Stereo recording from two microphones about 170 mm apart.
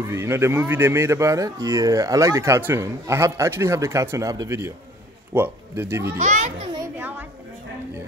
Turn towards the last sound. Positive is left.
turn(degrees=-10)  # may be behind; listen again after turning